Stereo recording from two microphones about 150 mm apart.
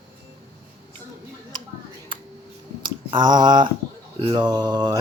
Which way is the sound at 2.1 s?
35° right (ahead or behind).